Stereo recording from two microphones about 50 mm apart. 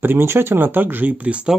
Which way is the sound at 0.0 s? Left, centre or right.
Right.